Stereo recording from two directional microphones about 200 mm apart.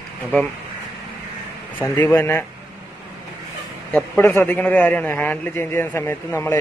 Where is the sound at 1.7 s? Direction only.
10° left (ahead or behind).